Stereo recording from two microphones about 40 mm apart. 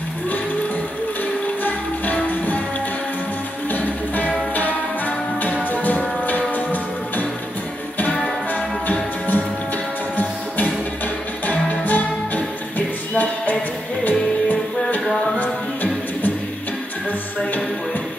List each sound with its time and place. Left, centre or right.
1.6 s music: left
3.7 s music: left
8.0 s music: left
8.8 s music: left
11.4 s music: left